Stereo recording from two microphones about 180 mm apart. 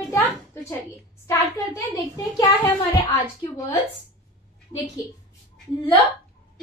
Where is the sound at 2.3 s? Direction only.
25° left (ahead or behind).